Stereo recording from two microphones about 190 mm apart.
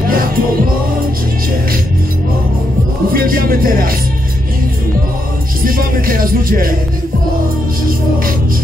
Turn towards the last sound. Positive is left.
turn(degrees=-50)  # may be behind; listen again after turning